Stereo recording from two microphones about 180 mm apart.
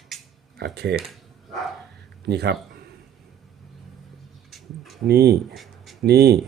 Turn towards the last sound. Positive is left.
turn(degrees=-65)  # may be behind; listen again after turning